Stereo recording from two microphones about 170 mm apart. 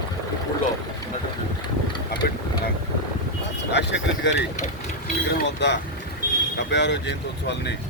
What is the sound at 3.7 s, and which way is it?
Speech, 90° left.